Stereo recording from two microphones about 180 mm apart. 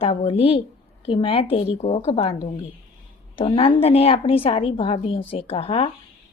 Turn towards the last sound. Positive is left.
turn(degrees=35)  # may be behind; listen again after turning